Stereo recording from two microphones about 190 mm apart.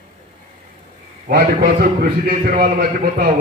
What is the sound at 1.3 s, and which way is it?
A man's voice, 50° right (ahead or behind).